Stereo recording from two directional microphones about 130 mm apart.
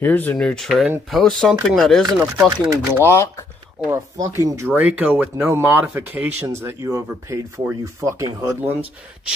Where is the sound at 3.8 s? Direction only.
25° right (ahead or behind).